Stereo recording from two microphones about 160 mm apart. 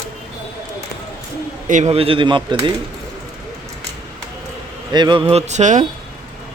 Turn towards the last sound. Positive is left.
turn(degrees=-50)  # may be behind; listen again after turning